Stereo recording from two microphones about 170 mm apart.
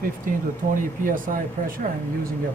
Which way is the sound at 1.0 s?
55° right (ahead or behind).